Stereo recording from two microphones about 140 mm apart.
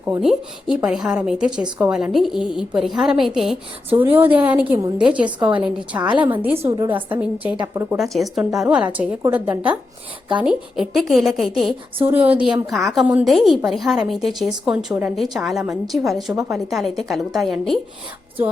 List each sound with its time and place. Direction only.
0.2 s a woman's voice: 5° right (ahead or behind)
3.8 s a woman's voice: 15° right (ahead or behind)
6.7 s a woman's voice: 30° right (ahead or behind)
7.1 s a woman's voice: 10° right (ahead or behind)
7.9 s a woman's voice: centre (ahead or behind)
12.0 s a woman's voice: 10° right (ahead or behind)
12.7 s a woman's voice: centre (ahead or behind)